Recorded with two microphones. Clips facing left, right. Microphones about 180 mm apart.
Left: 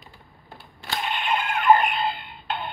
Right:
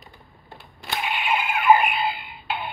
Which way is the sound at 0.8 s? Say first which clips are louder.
Right 1 dB; 10° right (ahead or behind).